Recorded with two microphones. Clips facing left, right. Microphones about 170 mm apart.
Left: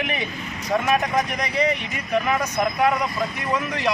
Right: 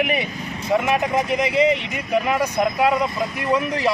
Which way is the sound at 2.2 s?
15° right (ahead or behind).